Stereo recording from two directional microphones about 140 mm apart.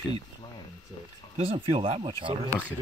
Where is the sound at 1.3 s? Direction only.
40° right (ahead or behind).